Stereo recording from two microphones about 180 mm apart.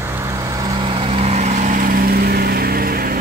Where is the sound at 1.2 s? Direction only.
40° right (ahead or behind); by 3.1 s 55° right (ahead or behind).